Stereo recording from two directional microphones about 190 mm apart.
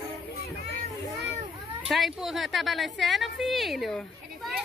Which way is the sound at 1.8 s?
Centre (ahead or behind).